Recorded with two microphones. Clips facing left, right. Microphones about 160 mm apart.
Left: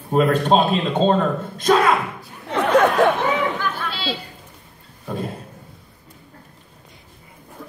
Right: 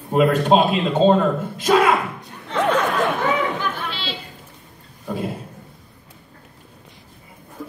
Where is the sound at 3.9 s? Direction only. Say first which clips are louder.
Left 3 dB; 40° left (ahead or behind).